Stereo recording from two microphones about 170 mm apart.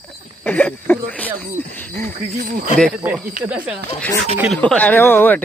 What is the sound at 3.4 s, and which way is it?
Speech, 10° right (ahead or behind).